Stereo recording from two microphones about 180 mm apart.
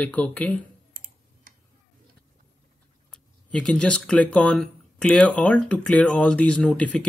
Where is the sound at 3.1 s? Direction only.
5° left (ahead or behind).